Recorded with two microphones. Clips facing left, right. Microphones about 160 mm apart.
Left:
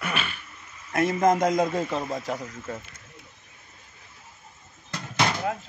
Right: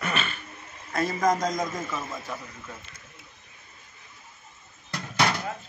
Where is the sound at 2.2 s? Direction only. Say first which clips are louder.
Left 6 dB; 90° left.